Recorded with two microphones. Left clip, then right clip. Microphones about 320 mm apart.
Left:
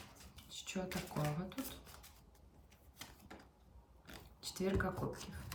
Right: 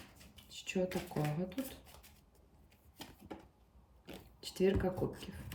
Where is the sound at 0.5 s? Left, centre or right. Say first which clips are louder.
Right 7 dB; centre.